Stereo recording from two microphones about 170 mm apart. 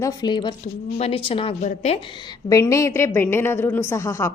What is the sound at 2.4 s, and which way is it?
A woman's voice, 20° left (ahead or behind).